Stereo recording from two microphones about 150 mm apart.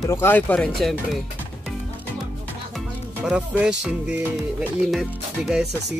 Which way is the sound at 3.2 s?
5° right (ahead or behind).